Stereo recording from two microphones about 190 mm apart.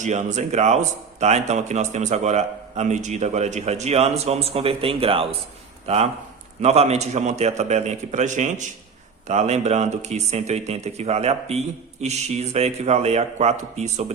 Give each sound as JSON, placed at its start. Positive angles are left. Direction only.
{"t": 0.0, "sound": "speech", "side_deg": -40}
{"t": 6.6, "sound": "speech", "side_deg": -35}